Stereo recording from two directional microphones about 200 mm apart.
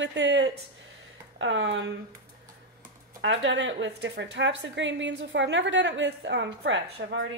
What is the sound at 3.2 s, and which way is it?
A woman's voice, 65° right (ahead or behind).